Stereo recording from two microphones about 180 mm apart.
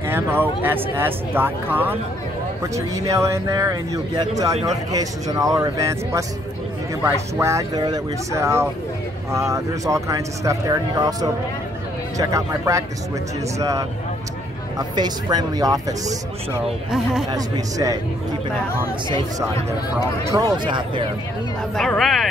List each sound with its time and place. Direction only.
0.0 s speech: 10° right (ahead or behind)
17.3 s speech: 20° right (ahead or behind)
20.2 s speech: 20° right (ahead or behind)
21.7 s speech: centre (ahead or behind)